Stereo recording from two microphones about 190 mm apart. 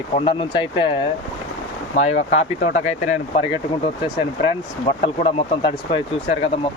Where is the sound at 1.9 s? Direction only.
35° left (ahead or behind).